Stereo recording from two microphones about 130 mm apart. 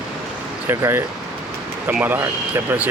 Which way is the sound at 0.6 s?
15° right (ahead or behind).